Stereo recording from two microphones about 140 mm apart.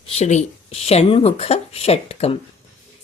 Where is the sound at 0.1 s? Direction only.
55° left (ahead or behind).